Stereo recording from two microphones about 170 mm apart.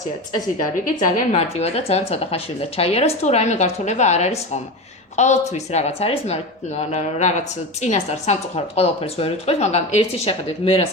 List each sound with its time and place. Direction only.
0.9 s speech: 55° left (ahead or behind); by 10.8 s 35° left (ahead or behind)